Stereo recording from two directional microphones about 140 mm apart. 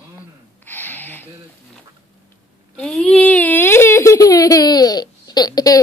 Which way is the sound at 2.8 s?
5° left (ahead or behind).